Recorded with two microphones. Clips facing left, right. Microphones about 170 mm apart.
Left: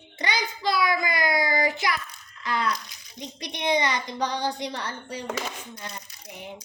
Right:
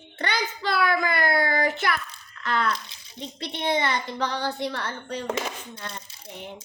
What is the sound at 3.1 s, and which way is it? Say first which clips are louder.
A woman's voice: right 2 dB; 15° left (ahead or behind).